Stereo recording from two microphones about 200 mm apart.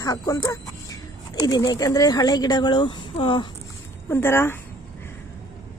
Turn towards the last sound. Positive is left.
turn(degrees=10)  # may be behind; listen again after turning